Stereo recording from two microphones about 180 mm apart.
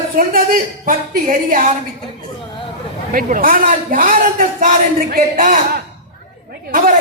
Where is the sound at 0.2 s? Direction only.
50° right (ahead or behind).